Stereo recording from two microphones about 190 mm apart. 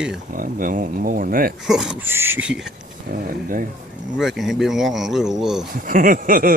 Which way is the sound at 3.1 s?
50° right (ahead or behind).